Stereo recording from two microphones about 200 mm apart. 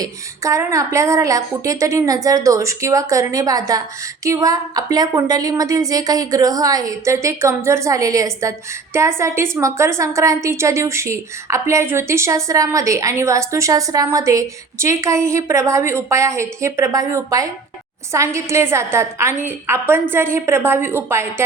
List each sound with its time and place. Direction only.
0.0 s a woman's voice: 15° right (ahead or behind)